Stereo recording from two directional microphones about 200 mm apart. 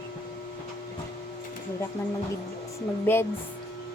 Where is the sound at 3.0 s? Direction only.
10° left (ahead or behind).